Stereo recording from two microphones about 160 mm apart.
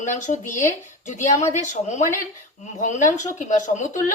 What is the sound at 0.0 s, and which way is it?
Speech, 50° left (ahead or behind).